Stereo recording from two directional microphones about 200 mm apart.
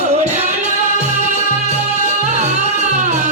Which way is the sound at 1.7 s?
35° right (ahead or behind).